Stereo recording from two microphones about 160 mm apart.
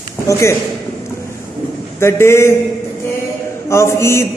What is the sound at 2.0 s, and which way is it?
Speech, 15° left (ahead or behind).